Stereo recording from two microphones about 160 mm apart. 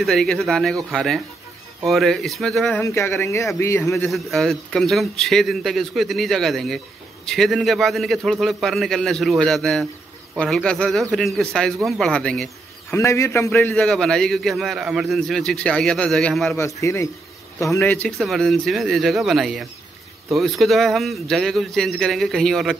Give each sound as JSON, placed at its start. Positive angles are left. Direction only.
{"t": 0.0, "sound": "a man's voice", "side_deg": 0}
{"t": 2.8, "sound": "speech", "side_deg": 15}
{"t": 3.9, "sound": "a man's voice", "side_deg": 0}
{"t": 12.9, "sound": "a man's voice", "side_deg": 20}
{"t": 16.5, "sound": "a man's voice", "side_deg": 20}